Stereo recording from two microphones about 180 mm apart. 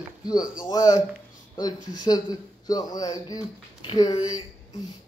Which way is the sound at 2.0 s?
20° left (ahead or behind).